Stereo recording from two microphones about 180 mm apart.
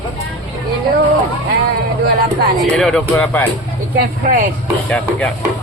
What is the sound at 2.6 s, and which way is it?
Speech, 5° left (ahead or behind).